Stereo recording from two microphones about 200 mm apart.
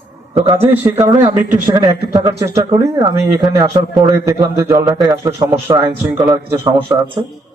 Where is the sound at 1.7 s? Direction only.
20° right (ahead or behind).